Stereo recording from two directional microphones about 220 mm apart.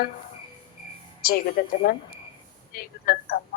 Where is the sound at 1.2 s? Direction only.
45° left (ahead or behind).